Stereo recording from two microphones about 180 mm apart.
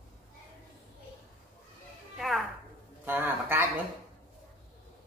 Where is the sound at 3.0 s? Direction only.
10° right (ahead or behind).